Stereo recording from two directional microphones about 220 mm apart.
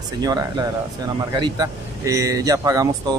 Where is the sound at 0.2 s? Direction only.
15° right (ahead or behind).